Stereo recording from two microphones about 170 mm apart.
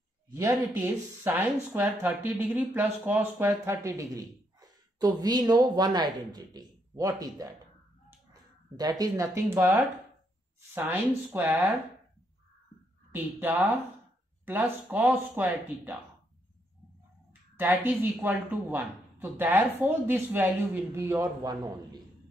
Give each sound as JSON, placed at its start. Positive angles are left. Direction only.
{"t": 0.3, "sound": "speech", "side_deg": -20}
{"t": 13.1, "sound": "speech", "side_deg": -10}
{"t": 17.3, "sound": "speech", "side_deg": -10}